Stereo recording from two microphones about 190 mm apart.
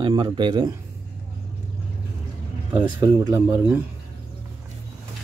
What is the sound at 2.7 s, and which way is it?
Speech, 25° right (ahead or behind).